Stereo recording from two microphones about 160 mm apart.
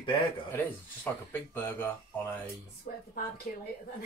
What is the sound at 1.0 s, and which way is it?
Speech, 15° left (ahead or behind).